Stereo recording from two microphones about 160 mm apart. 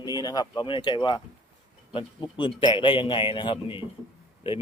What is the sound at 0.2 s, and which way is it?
Speech, 25° left (ahead or behind).